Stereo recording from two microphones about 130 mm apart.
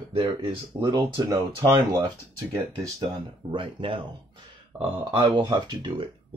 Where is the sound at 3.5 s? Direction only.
40° right (ahead or behind).